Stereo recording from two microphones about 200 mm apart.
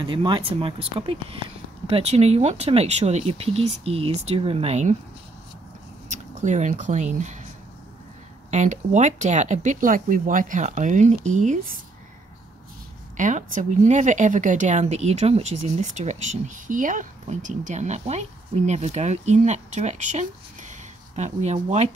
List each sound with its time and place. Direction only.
0.0 s speech: 25° right (ahead or behind)
6.0 s speech: 35° right (ahead or behind)
8.5 s speech: 35° right (ahead or behind)
13.2 s speech: 40° right (ahead or behind)